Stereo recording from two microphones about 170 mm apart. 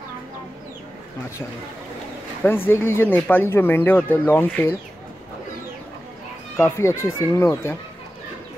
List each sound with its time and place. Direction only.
2.4 s speech: 15° left (ahead or behind)
6.5 s speech: 15° left (ahead or behind)